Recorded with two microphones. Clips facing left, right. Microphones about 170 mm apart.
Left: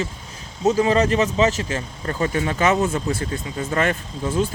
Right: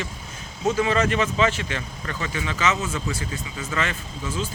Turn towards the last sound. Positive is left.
turn(degrees=55)  # may be behind; listen again after turning